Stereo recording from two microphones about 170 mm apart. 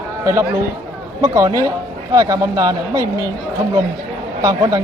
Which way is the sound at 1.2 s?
20° right (ahead or behind).